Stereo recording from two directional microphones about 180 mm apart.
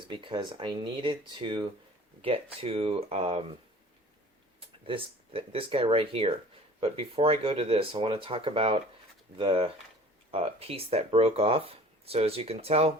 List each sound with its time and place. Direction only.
0.1 s speech: 25° right (ahead or behind)
4.9 s speech: 30° right (ahead or behind)